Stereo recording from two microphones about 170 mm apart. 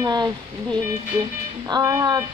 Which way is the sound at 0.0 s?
25° right (ahead or behind).